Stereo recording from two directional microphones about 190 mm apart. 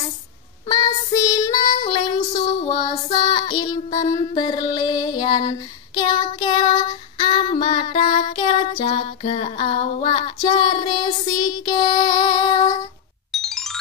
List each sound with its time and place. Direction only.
0.7 s child singing: 20° left (ahead or behind)
1.9 s female singing: 20° left (ahead or behind)
13.3 s music: centre (ahead or behind)